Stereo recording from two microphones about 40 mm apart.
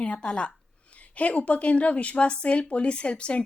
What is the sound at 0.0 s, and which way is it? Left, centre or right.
A woman's voice, left.